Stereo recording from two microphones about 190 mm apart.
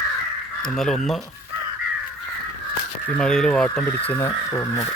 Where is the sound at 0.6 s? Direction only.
Centre (ahead or behind).